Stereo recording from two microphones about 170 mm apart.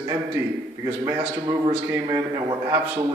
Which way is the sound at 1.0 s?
20° right (ahead or behind).